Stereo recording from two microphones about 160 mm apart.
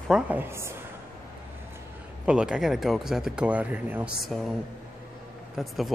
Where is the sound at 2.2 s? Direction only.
5° right (ahead or behind).